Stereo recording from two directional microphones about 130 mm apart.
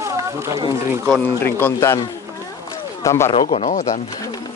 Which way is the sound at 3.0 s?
20° left (ahead or behind).